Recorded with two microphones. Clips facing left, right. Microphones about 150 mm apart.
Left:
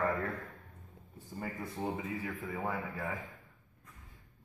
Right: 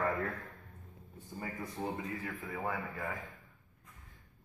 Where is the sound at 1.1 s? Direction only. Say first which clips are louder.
Left 1 dB; centre (ahead or behind).